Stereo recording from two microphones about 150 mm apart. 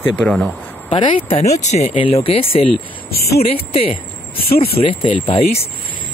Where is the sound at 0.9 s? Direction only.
35° left (ahead or behind).